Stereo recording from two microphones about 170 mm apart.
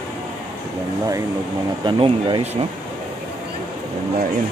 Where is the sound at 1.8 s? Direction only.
30° right (ahead or behind).